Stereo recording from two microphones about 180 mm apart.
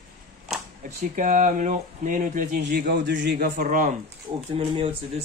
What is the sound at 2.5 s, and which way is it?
Speech, 65° right (ahead or behind).